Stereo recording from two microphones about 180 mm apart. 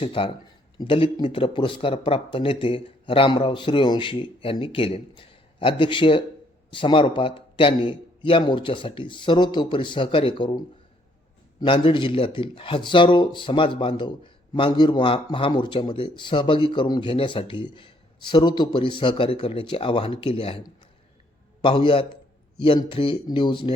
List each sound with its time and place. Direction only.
0.0 s a man's voice: 30° left (ahead or behind)
11.6 s a man's voice: 30° left (ahead or behind)
21.6 s a man's voice: 30° left (ahead or behind)